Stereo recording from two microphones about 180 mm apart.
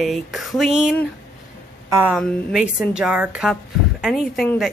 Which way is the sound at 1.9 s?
10° right (ahead or behind).